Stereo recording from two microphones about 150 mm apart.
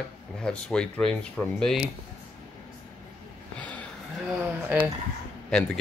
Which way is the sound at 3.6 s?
10° left (ahead or behind).